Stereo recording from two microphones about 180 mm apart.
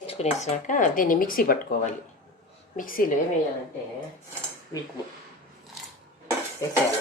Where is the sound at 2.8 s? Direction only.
50° left (ahead or behind).